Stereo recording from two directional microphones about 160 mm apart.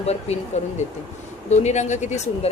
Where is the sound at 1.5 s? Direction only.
45° left (ahead or behind).